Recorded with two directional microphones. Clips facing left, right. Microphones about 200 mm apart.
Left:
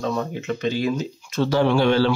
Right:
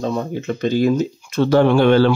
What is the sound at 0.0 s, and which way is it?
Speech, 30° right (ahead or behind).